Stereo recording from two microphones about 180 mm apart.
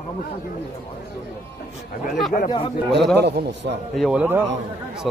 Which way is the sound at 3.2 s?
70° right (ahead or behind).